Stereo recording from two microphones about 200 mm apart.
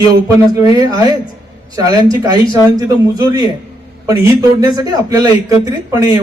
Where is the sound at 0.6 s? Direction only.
20° right (ahead or behind).